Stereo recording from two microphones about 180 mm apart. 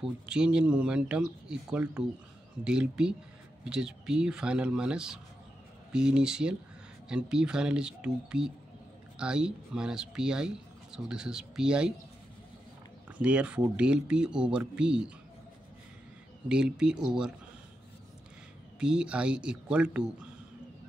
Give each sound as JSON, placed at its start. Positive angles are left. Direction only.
{"t": 0.3, "sound": "speech", "side_deg": -5}
{"t": 13.2, "sound": "speech", "side_deg": -5}
{"t": 16.4, "sound": "speech", "side_deg": -5}
{"t": 18.8, "sound": "speech", "side_deg": -5}